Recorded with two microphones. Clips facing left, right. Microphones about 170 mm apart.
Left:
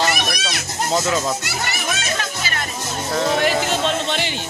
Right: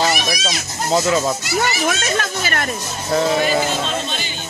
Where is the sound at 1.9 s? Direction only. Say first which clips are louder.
Right 4 dB; 55° right (ahead or behind).